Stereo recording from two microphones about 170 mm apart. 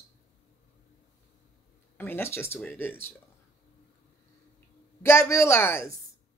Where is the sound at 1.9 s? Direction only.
10° left (ahead or behind).